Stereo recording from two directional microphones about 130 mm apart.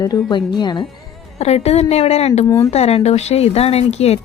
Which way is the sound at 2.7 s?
55° left (ahead or behind).